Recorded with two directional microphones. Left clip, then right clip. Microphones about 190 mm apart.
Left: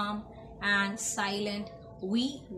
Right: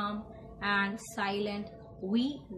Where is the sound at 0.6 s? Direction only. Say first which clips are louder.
Left 2 dB; 10° left (ahead or behind).